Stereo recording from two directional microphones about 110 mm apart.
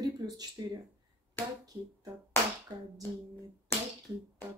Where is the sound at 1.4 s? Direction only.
15° left (ahead or behind).